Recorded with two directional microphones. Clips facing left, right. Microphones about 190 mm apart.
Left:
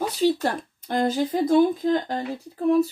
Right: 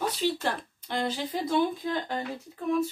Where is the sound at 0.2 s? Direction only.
45° left (ahead or behind).